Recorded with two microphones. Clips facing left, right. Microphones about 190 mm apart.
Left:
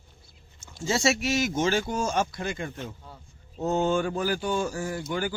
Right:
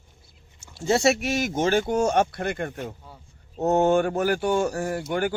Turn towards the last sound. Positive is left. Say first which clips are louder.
# right 4 dB
turn(degrees=-60)  # may be behind; listen again after turning